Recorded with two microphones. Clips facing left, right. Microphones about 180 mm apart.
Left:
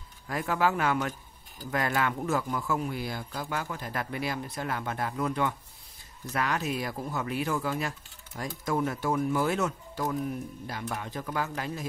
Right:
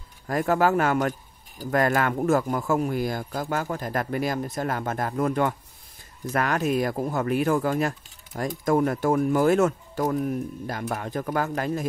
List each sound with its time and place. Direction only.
0.3 s speech: 45° right (ahead or behind)